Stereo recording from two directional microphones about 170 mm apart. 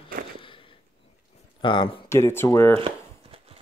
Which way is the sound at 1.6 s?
30° left (ahead or behind).